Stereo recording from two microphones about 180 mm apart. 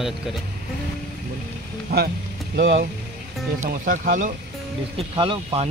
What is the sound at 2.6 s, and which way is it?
Speech, 80° right.